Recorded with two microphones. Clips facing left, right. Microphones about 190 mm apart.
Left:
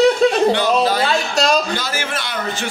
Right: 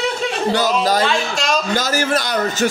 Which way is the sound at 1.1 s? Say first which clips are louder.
Left 2 dB; 35° left (ahead or behind).